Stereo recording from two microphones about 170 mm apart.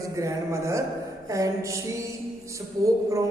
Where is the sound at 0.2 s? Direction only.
15° right (ahead or behind).